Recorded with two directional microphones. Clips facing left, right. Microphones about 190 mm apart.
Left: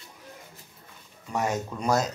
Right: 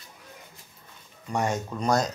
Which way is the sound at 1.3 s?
5° left (ahead or behind).